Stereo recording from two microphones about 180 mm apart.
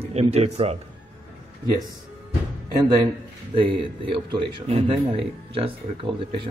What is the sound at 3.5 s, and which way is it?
Speech, 30° right (ahead or behind).